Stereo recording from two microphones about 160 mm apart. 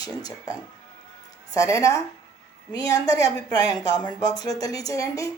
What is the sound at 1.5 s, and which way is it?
Speech, 20° left (ahead or behind).